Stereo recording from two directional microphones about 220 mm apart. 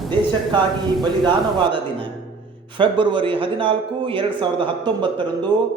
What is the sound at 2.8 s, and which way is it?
A man's voice, 20° right (ahead or behind).